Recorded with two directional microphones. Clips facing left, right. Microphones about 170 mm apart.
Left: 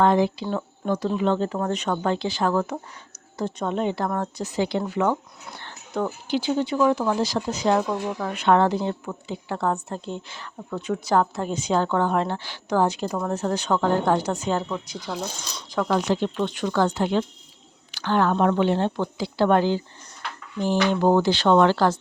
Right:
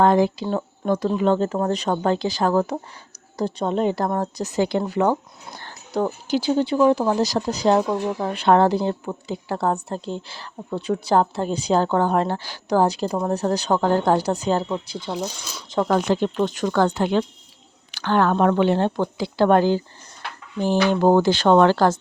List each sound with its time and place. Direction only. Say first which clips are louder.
0.0 s a woman's voice: right 2 dB; 45° right (ahead or behind); by 15.2 s 25° right (ahead or behind)
15.2 s speech: right 3 dB; 5° right (ahead or behind)
15.9 s speech: right 2 dB; 45° right (ahead or behind)